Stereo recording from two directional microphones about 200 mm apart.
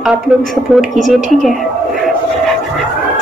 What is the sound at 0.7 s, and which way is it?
Speech, centre (ahead or behind).